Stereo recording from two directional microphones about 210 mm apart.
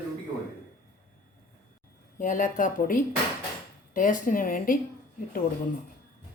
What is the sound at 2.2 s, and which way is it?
Speech, 40° left (ahead or behind).